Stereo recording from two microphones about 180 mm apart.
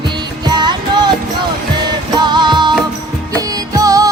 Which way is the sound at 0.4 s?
25° right (ahead or behind).